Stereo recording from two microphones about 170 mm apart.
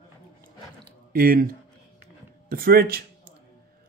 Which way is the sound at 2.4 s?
60° right (ahead or behind).